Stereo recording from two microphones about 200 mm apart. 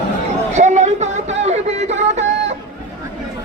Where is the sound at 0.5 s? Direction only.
35° right (ahead or behind).